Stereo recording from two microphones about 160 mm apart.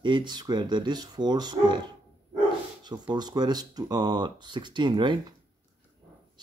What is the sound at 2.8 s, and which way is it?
Speech, 25° right (ahead or behind).